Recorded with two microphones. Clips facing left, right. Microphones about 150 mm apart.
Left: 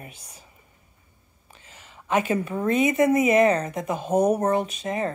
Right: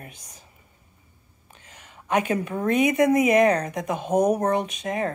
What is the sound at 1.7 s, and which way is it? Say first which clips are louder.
Speech: even; centre (ahead or behind).